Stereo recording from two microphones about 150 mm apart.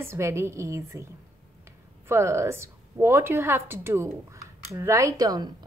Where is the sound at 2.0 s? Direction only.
20° right (ahead or behind).